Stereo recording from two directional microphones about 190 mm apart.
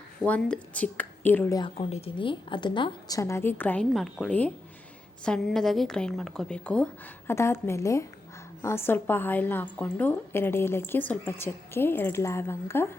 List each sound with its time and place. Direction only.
0.2 s a woman's voice: 5° left (ahead or behind)
1.7 s a woman's voice: 30° left (ahead or behind); by 12.9 s 10° left (ahead or behind)